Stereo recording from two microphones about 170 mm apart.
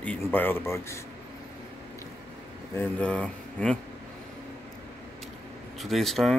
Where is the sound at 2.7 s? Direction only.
10° left (ahead or behind).